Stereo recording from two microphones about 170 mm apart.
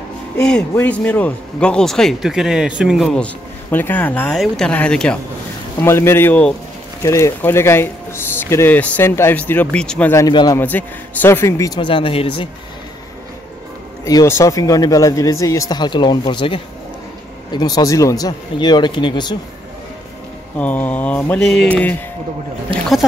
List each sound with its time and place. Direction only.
0.5 s speech: 5° left (ahead or behind)
3.7 s speech: 10° left (ahead or behind)
10.2 s speech: 25° left (ahead or behind)
10.6 s speech: 10° left (ahead or behind); by 12.4 s 35° left (ahead or behind)
14.0 s speech: 15° left (ahead or behind)
20.5 s speech: 10° left (ahead or behind)
22.7 s a sound: 30° right (ahead or behind)